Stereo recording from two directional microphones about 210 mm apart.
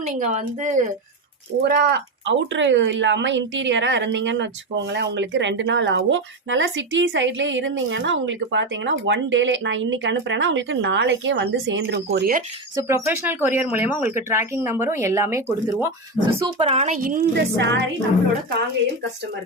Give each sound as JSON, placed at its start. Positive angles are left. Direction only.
{"t": 0.0, "sound": "speech", "side_deg": -35}
{"t": 1.6, "sound": "speech", "side_deg": -50}
{"t": 12.7, "sound": "speech", "side_deg": -10}
{"t": 16.2, "sound": "speech", "side_deg": -25}
{"t": 17.0, "sound": "speech", "side_deg": -50}